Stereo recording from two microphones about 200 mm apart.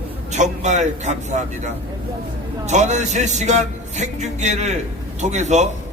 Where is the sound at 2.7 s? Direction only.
35° right (ahead or behind).